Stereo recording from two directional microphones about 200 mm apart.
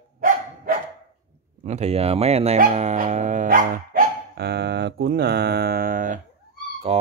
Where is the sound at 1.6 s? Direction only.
35° right (ahead or behind).